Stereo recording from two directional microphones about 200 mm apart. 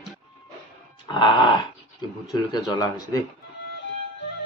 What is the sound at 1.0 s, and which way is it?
Dog, 25° left (ahead or behind).